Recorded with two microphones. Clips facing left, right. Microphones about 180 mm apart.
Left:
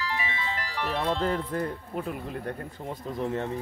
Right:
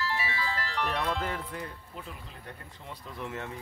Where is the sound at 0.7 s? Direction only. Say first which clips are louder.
Left 2 dB; centre (ahead or behind).